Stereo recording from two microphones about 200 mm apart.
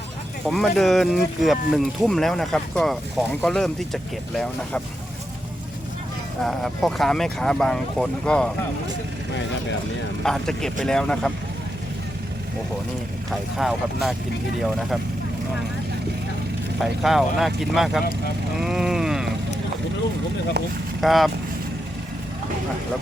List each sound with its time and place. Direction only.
0.4 s speech: centre (ahead or behind)
6.4 s speech: centre (ahead or behind)
10.2 s speech: 5° left (ahead or behind)
13.3 s speech: centre (ahead or behind)
16.8 s speech: centre (ahead or behind)
18.6 s a sound: centre (ahead or behind)
20.6 s speech: 55° right (ahead or behind)
21.0 s speech: centre (ahead or behind)